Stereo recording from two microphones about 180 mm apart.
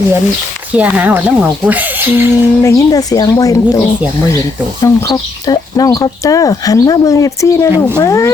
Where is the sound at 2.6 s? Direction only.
20° left (ahead or behind).